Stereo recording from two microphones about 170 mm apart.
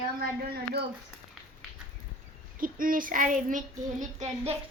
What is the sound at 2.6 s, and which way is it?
Speech, 55° right (ahead or behind).